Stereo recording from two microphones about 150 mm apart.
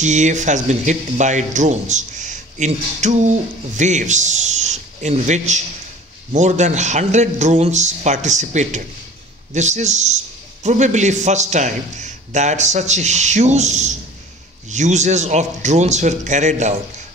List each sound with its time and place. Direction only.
0.0 s speech: 50° right (ahead or behind)